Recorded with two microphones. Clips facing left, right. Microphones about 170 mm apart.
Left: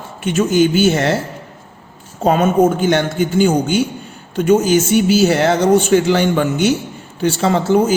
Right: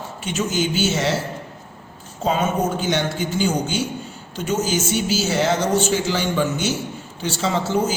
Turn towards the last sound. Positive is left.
turn(degrees=55)  # may be behind; listen again after turning